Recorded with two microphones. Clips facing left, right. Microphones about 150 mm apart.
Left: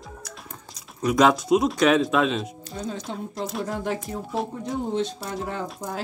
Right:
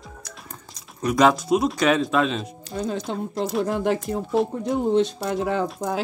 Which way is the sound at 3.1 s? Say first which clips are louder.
Right 5 dB; 75° right (ahead or behind).